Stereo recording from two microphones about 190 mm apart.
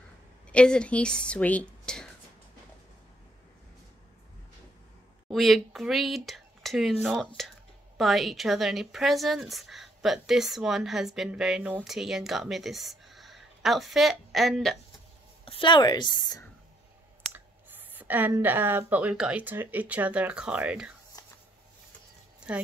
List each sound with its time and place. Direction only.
0.5 s a woman's voice: 5° left (ahead or behind)
5.3 s a woman's voice: centre (ahead or behind)
15.4 s speech: 25° left (ahead or behind)
17.3 s speech: 10° right (ahead or behind)